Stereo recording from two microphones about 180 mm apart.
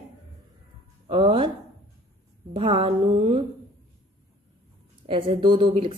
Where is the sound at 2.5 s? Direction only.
30° right (ahead or behind).